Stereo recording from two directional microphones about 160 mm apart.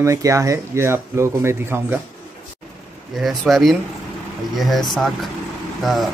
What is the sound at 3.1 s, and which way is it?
Speech, centre (ahead or behind).